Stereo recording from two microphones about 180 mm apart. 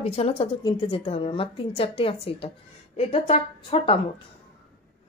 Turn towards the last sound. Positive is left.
turn(degrees=30)  # may be behind; listen again after turning